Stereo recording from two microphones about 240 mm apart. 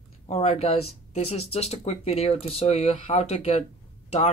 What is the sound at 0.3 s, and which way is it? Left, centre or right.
Speech, left.